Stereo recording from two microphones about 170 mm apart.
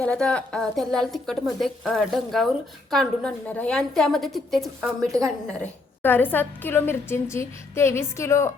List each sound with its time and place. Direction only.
0.0 s speech: 5° left (ahead or behind)
5.1 s a woman's voice: 20° right (ahead or behind)
6.0 s a woman's voice: 10° left (ahead or behind)